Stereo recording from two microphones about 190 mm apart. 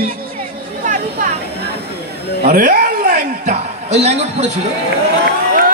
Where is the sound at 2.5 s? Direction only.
45° right (ahead or behind).